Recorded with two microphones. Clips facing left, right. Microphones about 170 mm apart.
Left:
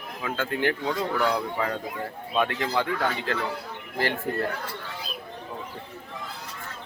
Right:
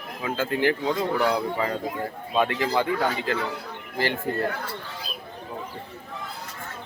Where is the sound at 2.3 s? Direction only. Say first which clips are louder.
Right 2 dB; 5° right (ahead or behind).